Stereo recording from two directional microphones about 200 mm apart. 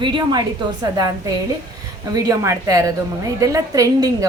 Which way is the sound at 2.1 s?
15° right (ahead or behind).